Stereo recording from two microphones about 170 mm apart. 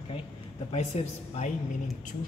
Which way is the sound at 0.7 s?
40° left (ahead or behind).